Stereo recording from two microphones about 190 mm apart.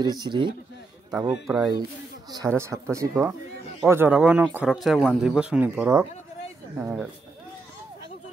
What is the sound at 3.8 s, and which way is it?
Speech, 10° right (ahead or behind).